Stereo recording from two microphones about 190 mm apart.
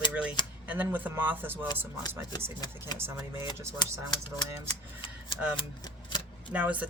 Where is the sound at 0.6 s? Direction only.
10° right (ahead or behind).